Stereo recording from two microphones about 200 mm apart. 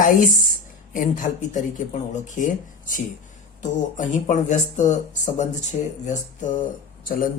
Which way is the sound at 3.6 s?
40° left (ahead or behind).